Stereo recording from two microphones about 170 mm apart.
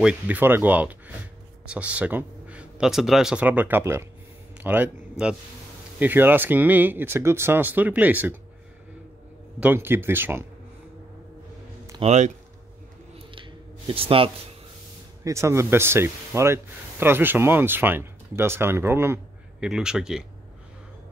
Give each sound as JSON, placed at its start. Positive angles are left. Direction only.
{"t": 0.0, "sound": "speech", "side_deg": -10}
{"t": 5.9, "sound": "speech", "side_deg": -10}
{"t": 9.6, "sound": "speech", "side_deg": -10}
{"t": 12.0, "sound": "speech", "side_deg": -40}
{"t": 13.3, "sound": "a sound", "side_deg": -30}
{"t": 15.2, "sound": "speech", "side_deg": -15}